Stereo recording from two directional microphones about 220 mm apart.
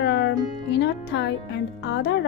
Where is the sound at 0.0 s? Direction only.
50° left (ahead or behind).